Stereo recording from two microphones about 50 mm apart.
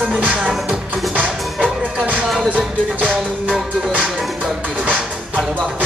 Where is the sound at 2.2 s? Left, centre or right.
Centre.